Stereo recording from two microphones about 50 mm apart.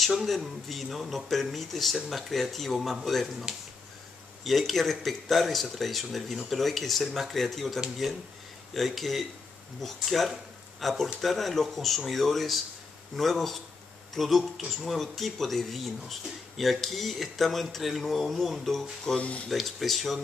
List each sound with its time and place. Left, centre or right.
0.0 s speech: centre
4.5 s speech: centre
19.1 s speech: left
19.5 s speech: centre